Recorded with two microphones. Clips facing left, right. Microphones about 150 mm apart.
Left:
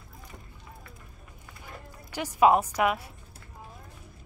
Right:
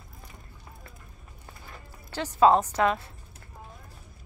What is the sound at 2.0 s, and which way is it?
Speech, 15° left (ahead or behind).